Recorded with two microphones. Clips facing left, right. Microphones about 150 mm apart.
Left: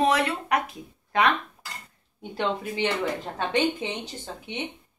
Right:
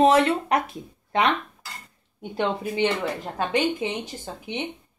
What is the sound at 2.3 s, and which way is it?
Speech, 20° right (ahead or behind).